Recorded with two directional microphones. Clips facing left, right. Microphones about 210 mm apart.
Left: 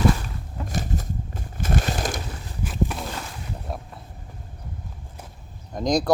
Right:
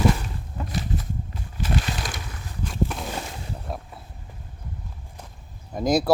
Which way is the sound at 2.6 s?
5° left (ahead or behind).